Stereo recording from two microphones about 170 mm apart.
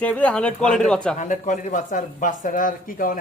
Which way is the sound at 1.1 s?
50° left (ahead or behind).